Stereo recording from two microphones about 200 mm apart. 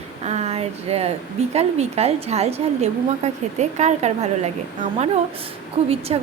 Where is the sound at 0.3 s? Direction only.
30° right (ahead or behind).